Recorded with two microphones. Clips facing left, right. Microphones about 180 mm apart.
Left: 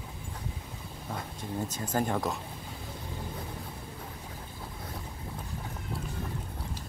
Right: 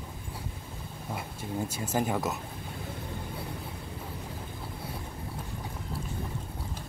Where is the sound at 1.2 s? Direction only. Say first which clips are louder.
Right 1 dB; 10° right (ahead or behind).